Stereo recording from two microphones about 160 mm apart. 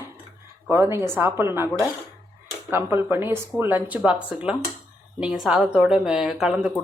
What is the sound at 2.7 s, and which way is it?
Speech, 15° right (ahead or behind).